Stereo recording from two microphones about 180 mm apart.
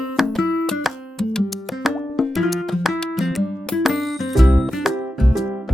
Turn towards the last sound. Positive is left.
turn(degrees=-5)  # may be behind; listen again after turning